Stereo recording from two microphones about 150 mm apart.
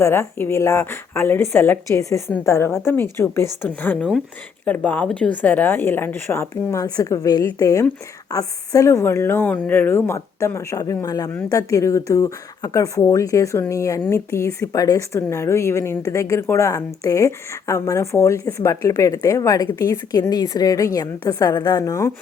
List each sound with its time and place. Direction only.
0.0 s a woman's voice: 15° left (ahead or behind)